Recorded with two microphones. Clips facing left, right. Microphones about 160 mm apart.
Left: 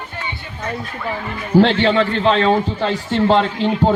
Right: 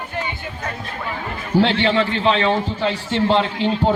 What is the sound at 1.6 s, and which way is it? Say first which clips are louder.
A man's voice: left 3 dB; 40° left (ahead or behind).